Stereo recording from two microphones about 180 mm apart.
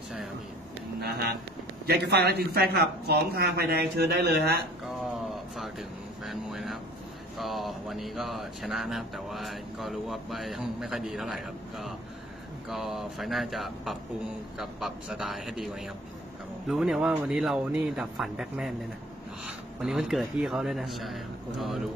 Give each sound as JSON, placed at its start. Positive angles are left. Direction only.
{"t": 1.0, "sound": "speech", "side_deg": -60}
{"t": 5.3, "sound": "speech", "side_deg": 0}